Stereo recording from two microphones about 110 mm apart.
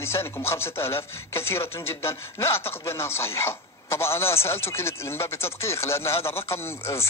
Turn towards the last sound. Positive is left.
turn(degrees=25)  # may be behind; listen again after turning